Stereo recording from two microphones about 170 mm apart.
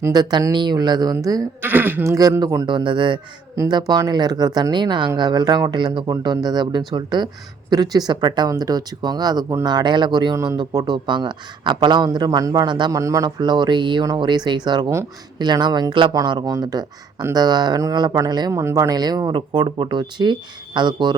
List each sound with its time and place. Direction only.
0.0 s speech: 25° right (ahead or behind)